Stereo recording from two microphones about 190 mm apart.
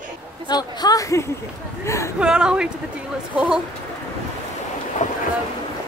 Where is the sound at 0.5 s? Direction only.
20° left (ahead or behind).